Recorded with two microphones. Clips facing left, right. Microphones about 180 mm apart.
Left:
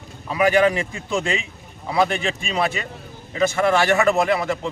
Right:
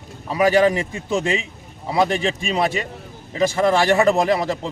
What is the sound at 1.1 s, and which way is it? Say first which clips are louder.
A man's voice: right 2 dB; 25° right (ahead or behind).